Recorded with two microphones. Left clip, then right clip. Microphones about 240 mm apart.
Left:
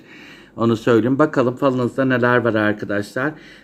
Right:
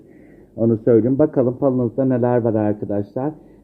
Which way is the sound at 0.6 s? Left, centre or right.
Centre.